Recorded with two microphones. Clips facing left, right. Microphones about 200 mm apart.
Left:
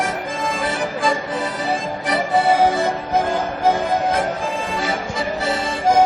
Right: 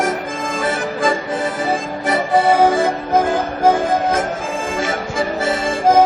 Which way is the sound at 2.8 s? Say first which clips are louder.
Right 3 dB; 50° right (ahead or behind).